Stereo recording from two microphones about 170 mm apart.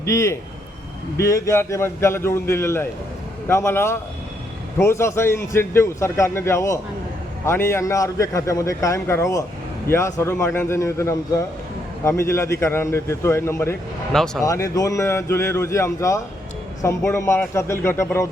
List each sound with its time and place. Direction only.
0.0 s a man's voice: 15° left (ahead or behind)
14.1 s speech: centre (ahead or behind)
14.4 s a man's voice: 20° left (ahead or behind)